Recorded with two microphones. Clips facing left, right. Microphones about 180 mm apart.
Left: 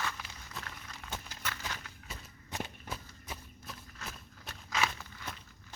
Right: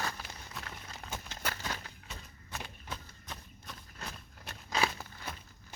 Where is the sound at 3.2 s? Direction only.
10° left (ahead or behind).